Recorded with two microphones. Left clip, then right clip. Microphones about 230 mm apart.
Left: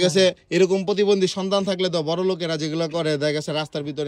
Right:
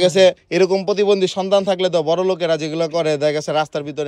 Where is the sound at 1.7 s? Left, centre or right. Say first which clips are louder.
Right 6 dB; right.